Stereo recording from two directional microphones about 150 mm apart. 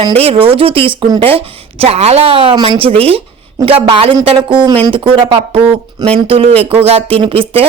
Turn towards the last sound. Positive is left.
turn(degrees=-35)  # may be behind; listen again after turning